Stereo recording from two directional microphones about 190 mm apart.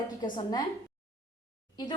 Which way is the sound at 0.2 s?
20° left (ahead or behind).